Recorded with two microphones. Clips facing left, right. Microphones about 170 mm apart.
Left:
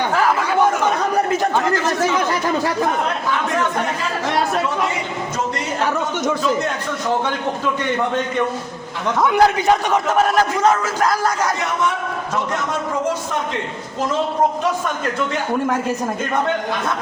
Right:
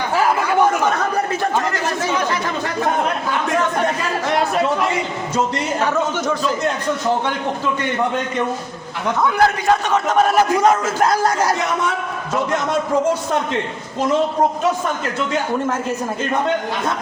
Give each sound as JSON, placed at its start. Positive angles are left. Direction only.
{"t": 9.2, "sound": "a man's voice", "side_deg": 20}
{"t": 10.8, "sound": "speech", "side_deg": -25}